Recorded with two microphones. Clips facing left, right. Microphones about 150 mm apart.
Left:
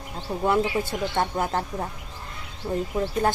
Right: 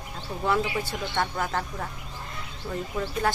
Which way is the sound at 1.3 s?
25° left (ahead or behind).